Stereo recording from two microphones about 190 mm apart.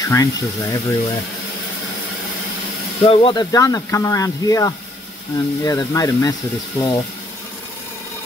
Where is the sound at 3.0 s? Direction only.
30° left (ahead or behind).